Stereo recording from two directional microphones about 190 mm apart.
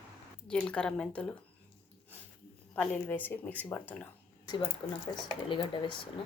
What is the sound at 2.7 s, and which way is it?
Speech, 5° left (ahead or behind).